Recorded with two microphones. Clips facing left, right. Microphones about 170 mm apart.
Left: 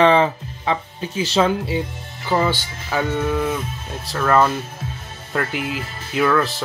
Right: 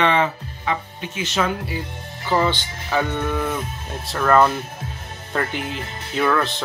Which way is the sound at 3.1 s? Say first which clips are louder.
Left 3 dB; 5° left (ahead or behind).